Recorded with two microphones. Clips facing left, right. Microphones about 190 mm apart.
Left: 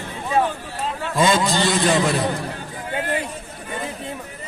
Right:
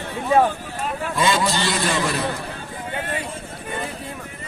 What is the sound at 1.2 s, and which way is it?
A man's voice, 20° left (ahead or behind).